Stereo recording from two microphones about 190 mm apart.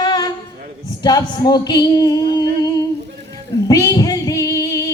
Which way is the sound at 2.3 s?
20° left (ahead or behind).